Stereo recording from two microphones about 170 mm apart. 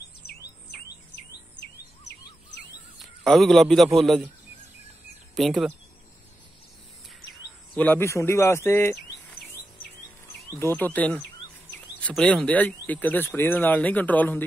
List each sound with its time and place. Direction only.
0.3 s bird: 70° left (ahead or behind)
3.3 s a man's voice: centre (ahead or behind)
5.3 s speech: centre (ahead or behind)
7.7 s speech: 10° left (ahead or behind)
10.5 s speech: 15° left (ahead or behind)